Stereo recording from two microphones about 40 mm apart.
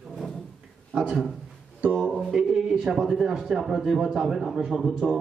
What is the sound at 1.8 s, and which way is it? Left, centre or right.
Speech, right.